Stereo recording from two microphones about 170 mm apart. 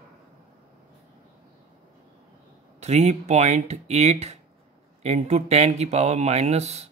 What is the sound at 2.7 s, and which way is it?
Speech, 40° right (ahead or behind).